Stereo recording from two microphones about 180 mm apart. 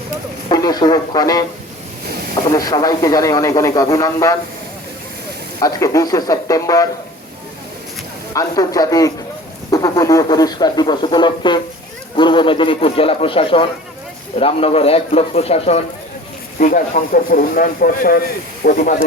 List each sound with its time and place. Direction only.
0.4 s speech: 20° left (ahead or behind)
2.5 s speech: 20° left (ahead or behind)
5.5 s speech: 20° left (ahead or behind)
8.3 s speech: 20° left (ahead or behind); by 15.8 s 35° left (ahead or behind)
16.6 s speech: 45° left (ahead or behind)